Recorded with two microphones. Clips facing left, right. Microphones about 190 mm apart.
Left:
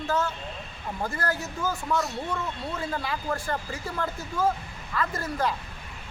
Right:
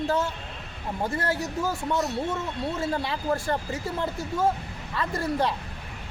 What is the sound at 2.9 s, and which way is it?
Speech, 25° right (ahead or behind).